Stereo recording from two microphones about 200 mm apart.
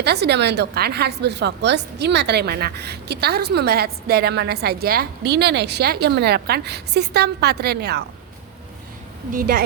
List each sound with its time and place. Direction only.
0.0 s a woman's voice: 55° right (ahead or behind)
9.3 s a woman's voice: 45° right (ahead or behind)